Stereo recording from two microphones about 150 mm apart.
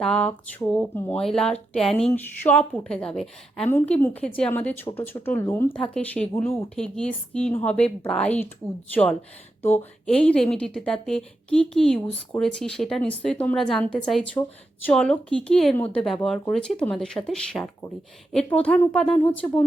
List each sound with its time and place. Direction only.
0.0 s a woman's voice: 5° left (ahead or behind)
5.7 s speech: 5° left (ahead or behind)
6.3 s a woman's voice: 15° left (ahead or behind)
6.7 s a woman's voice: 5° left (ahead or behind)
9.7 s a woman's voice: 10° left (ahead or behind)